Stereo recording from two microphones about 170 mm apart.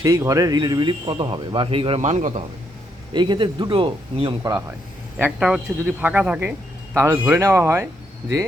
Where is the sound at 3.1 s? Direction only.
25° right (ahead or behind).